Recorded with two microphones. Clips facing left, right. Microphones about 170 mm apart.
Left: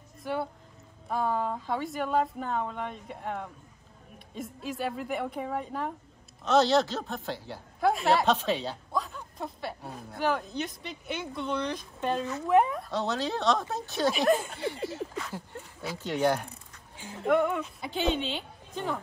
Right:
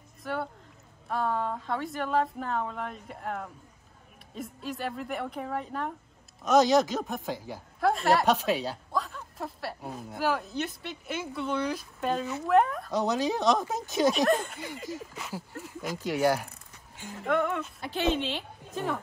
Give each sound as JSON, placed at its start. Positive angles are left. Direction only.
{"t": 0.2, "sound": "speech", "side_deg": 0}
{"t": 6.4, "sound": "speech", "side_deg": -15}
{"t": 7.8, "sound": "speech", "side_deg": 0}
{"t": 12.9, "sound": "speech", "side_deg": -15}
{"t": 14.1, "sound": "speech", "side_deg": 0}
{"t": 14.9, "sound": "speech", "side_deg": -15}
{"t": 16.9, "sound": "music", "side_deg": 10}
{"t": 17.2, "sound": "speech", "side_deg": 0}